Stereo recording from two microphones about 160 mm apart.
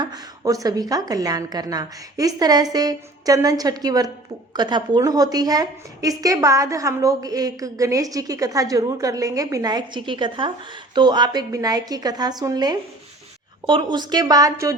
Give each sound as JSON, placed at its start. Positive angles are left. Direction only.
{"t": 0.0, "sound": "a woman's voice", "side_deg": -25}